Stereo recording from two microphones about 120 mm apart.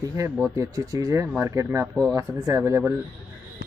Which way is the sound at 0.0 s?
30° right (ahead or behind).